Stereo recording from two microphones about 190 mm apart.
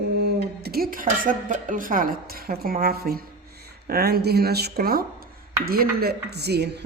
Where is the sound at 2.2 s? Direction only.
50° right (ahead or behind).